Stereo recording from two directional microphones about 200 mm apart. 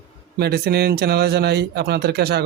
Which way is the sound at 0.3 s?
55° right (ahead or behind).